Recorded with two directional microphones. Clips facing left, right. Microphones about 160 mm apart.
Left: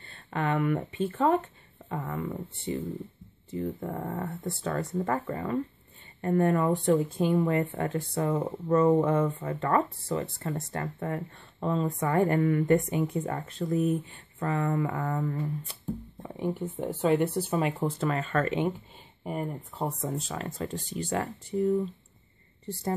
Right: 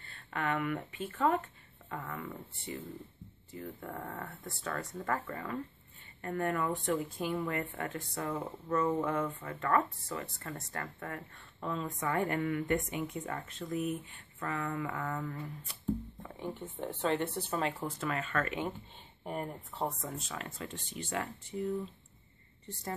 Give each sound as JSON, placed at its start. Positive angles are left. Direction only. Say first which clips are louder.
{"t": 0.0, "sound": "speech", "louder": "left 5 dB", "side_deg": 30}
{"t": 16.3, "sound": "speech", "louder": "left 9 dB", "side_deg": 15}
{"t": 17.8, "sound": "speech", "louder": "left 7 dB", "side_deg": 30}
{"t": 19.2, "sound": "speech", "louder": "left 5 dB", "side_deg": 0}
{"t": 19.9, "sound": "speech", "louder": "left 7 dB", "side_deg": 25}